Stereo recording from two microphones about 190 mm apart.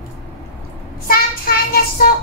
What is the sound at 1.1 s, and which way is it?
Child singing, 50° left (ahead or behind).